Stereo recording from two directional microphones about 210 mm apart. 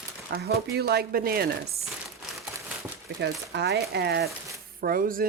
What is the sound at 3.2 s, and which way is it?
Speech, 55° right (ahead or behind).